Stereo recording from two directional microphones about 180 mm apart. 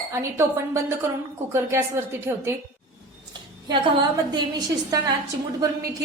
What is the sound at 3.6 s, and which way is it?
A woman's voice, 25° right (ahead or behind).